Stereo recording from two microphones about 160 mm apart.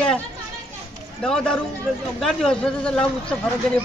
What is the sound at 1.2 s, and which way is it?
A man's voice, 5° left (ahead or behind).